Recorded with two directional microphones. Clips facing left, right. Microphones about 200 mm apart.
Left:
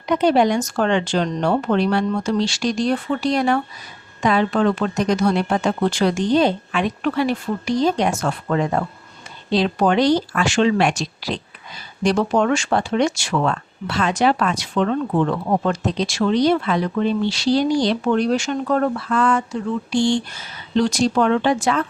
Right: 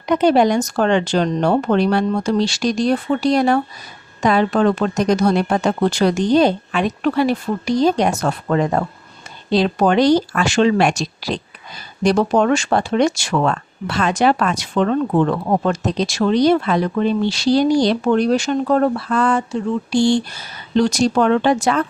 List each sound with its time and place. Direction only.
0.1 s speech: 45° right (ahead or behind)